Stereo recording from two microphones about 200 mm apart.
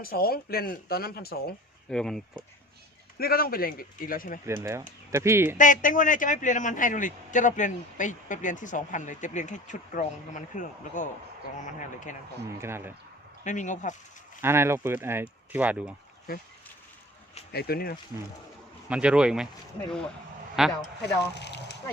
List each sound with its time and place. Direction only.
0.0 s speech: 50° left (ahead or behind)
1.9 s speech: centre (ahead or behind)
3.2 s speech: 50° left (ahead or behind)
4.4 s speech: 15° right (ahead or behind)
5.5 s a man's voice: 40° left (ahead or behind)
12.5 s speech: 10° right (ahead or behind)
13.4 s a man's voice: 40° left (ahead or behind)
14.4 s speech: 10° right (ahead or behind)
17.5 s speech: 50° left (ahead or behind)
18.9 s speech: 5° right (ahead or behind)
20.6 s speech: centre (ahead or behind)
21.3 s speech: 60° left (ahead or behind)